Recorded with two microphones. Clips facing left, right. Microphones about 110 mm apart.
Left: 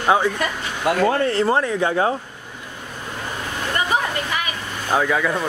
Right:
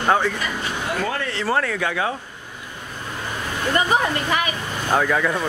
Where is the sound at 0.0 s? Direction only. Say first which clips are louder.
Left 1 dB; 10° left (ahead or behind).